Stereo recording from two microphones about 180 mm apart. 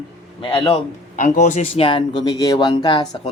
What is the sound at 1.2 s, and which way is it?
Speech, 45° left (ahead or behind).